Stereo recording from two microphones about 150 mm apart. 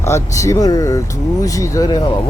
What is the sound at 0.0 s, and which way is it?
Speech, 20° left (ahead or behind).